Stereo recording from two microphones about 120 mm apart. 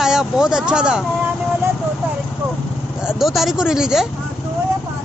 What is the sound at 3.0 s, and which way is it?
Speech, centre (ahead or behind).